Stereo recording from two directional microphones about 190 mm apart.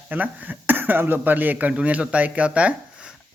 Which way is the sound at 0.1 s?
10° right (ahead or behind).